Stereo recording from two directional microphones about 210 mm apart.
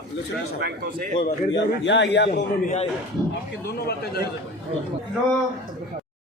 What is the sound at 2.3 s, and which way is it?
Speech, 35° left (ahead or behind).